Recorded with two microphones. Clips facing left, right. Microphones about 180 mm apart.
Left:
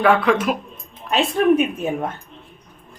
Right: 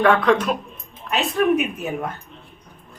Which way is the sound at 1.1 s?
30° left (ahead or behind).